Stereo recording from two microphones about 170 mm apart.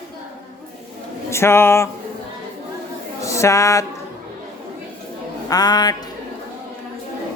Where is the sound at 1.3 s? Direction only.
15° left (ahead or behind).